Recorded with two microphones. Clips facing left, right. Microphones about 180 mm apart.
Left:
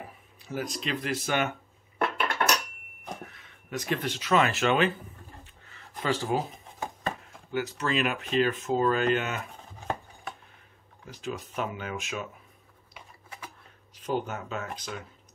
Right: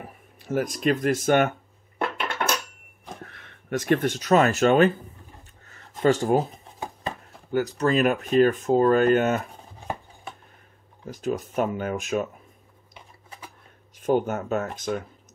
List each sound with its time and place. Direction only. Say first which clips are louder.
0.4 s speech: right 8 dB; 50° right (ahead or behind)
2.2 s dishes: even; 25° right (ahead or behind)
3.3 s speech: right 9 dB; 65° right (ahead or behind); by 4.9 s 45° right (ahead or behind)
5.7 s a sound: right 9 dB; 45° right (ahead or behind)
7.5 s speech: right 7 dB; 40° right (ahead or behind)
11.1 s speech: right 8 dB; 45° right (ahead or behind)
13.9 s speech: right 8 dB; 50° right (ahead or behind)